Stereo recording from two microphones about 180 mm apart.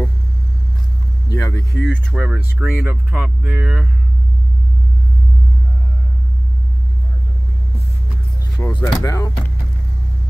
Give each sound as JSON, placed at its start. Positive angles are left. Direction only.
{"t": 1.3, "sound": "a sound", "side_deg": 15}
{"t": 1.8, "sound": "speech", "side_deg": 0}
{"t": 8.5, "sound": "speech", "side_deg": 20}